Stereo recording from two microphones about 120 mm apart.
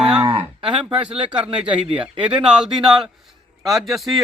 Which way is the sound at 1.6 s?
10° right (ahead or behind).